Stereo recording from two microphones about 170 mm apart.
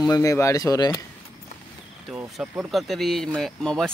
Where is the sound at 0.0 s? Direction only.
20° left (ahead or behind).